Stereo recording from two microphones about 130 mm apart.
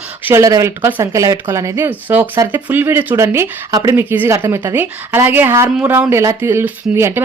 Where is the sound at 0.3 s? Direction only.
25° right (ahead or behind).